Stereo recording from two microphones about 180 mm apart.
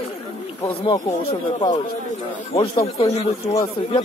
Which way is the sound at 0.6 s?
25° left (ahead or behind).